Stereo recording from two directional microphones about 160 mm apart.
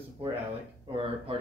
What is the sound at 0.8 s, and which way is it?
Speech, 35° right (ahead or behind).